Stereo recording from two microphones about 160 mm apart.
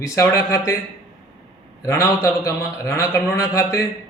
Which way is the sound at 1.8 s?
20° left (ahead or behind).